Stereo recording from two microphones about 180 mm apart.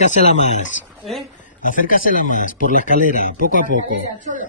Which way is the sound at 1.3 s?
45° left (ahead or behind).